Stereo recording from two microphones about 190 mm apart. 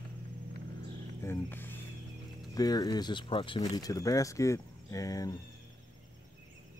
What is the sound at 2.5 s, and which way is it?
Speech, 20° left (ahead or behind).